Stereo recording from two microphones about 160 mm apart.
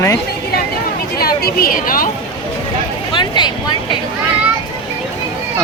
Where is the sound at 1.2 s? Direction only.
70° left (ahead or behind).